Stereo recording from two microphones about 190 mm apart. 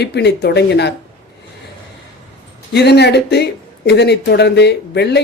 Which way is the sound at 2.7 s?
60° left (ahead or behind).